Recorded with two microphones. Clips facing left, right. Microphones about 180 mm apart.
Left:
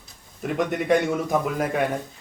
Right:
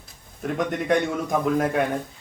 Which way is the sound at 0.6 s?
Centre (ahead or behind).